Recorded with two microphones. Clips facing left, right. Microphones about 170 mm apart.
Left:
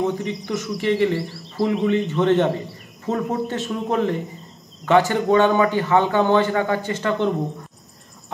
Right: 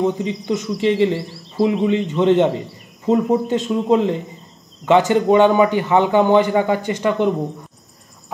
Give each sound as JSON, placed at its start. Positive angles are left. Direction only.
{"t": 0.0, "sound": "speech", "side_deg": -20}
{"t": 1.2, "sound": "a sound", "side_deg": 0}
{"t": 1.9, "sound": "a man's voice", "side_deg": -15}